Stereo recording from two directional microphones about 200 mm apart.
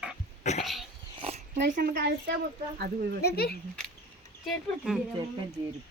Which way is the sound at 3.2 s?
50° left (ahead or behind).